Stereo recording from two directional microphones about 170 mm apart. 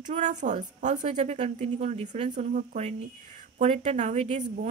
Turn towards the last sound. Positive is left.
turn(degrees=-40)  # may be behind; listen again after turning